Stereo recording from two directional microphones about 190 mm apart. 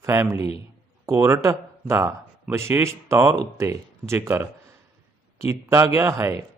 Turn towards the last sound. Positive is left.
turn(degrees=-15)  # may be behind; listen again after turning